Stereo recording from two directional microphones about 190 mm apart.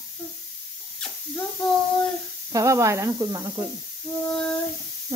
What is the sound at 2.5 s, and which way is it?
Speech, 15° right (ahead or behind).